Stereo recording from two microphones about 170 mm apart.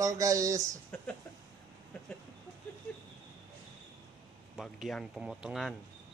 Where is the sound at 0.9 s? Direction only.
10° left (ahead or behind).